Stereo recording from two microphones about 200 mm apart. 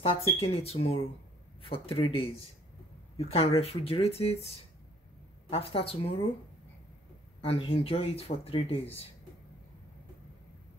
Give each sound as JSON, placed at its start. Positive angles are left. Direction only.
{"t": 0.0, "sound": "speech", "side_deg": 30}
{"t": 5.5, "sound": "speech", "side_deg": 30}
{"t": 7.4, "sound": "speech", "side_deg": 30}